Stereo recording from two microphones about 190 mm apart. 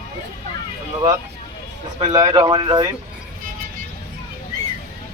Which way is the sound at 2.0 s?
25° right (ahead or behind).